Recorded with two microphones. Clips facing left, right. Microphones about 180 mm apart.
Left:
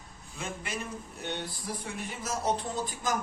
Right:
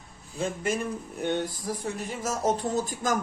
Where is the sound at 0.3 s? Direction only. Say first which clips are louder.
Right 9 dB; 40° right (ahead or behind).